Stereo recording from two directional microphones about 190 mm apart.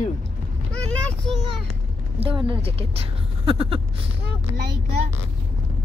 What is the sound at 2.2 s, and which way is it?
Speech, 30° right (ahead or behind).